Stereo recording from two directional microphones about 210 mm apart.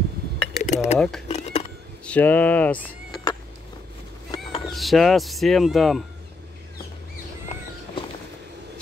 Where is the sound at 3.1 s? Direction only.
20° left (ahead or behind).